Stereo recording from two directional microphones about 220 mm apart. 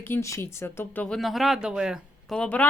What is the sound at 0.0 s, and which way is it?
Speech, 10° left (ahead or behind).